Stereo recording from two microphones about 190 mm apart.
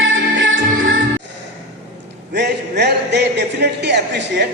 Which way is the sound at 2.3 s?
60° right (ahead or behind).